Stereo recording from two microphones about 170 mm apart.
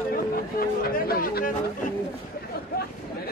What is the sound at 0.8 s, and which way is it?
Speech, 60° left (ahead or behind).